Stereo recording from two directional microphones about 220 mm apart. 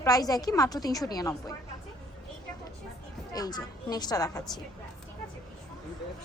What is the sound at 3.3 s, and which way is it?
A woman's voice, 15° left (ahead or behind).